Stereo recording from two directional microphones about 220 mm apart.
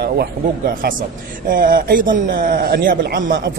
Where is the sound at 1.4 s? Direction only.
40° right (ahead or behind).